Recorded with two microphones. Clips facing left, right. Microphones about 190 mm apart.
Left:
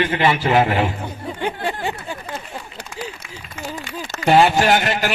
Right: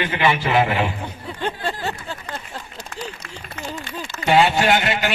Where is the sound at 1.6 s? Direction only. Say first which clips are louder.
Left 2 dB; 15° left (ahead or behind).